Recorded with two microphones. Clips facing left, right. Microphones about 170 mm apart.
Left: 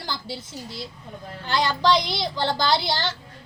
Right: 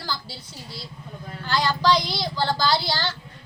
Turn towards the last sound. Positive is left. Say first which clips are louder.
# left 1 dB
turn(degrees=20)  # may be behind; listen again after turning